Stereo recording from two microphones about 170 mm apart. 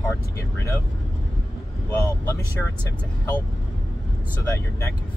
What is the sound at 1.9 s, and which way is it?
Speech, 15° left (ahead or behind).